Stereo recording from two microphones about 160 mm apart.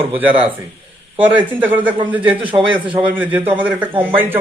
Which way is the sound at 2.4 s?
35° right (ahead or behind).